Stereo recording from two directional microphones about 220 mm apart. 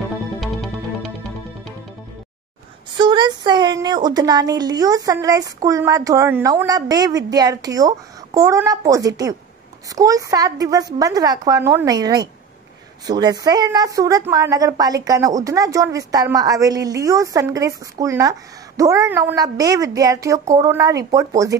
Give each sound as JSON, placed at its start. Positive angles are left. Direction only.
{"t": 3.0, "sound": "a woman's voice", "side_deg": -20}